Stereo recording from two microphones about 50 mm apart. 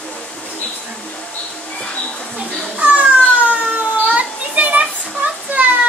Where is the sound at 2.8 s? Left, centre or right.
Right.